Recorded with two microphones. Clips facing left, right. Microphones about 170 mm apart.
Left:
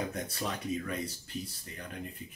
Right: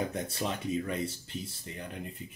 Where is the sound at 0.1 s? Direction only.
25° right (ahead or behind).